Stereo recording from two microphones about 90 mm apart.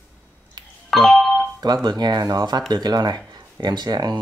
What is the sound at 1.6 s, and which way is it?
Speech, 50° right (ahead or behind).